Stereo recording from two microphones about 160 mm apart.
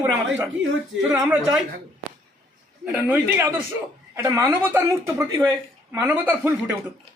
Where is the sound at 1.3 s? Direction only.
5° right (ahead or behind).